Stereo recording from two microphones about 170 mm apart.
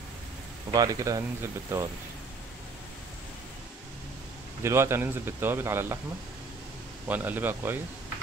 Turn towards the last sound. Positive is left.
turn(degrees=-10)  # may be behind; listen again after turning